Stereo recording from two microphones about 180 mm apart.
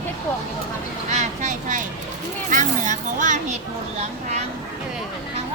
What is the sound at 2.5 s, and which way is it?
Speech, 45° right (ahead or behind).